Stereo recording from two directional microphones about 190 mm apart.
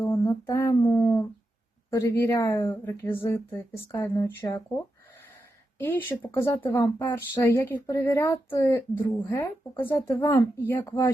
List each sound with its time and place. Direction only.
0.0 s a sound: 15° left (ahead or behind)
1.9 s speech: 15° left (ahead or behind)
5.8 s speech: 10° left (ahead or behind)